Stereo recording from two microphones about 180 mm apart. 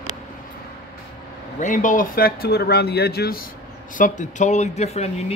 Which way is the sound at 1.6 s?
45° left (ahead or behind).